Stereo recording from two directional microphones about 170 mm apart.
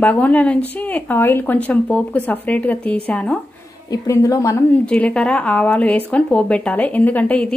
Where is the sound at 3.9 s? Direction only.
20° left (ahead or behind).